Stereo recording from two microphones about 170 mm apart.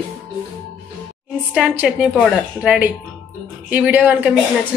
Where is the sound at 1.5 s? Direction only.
5° right (ahead or behind).